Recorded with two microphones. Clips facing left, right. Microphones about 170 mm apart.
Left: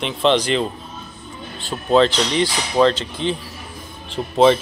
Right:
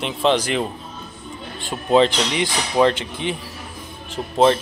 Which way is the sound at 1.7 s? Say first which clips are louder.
Left 1 dB; 10° right (ahead or behind).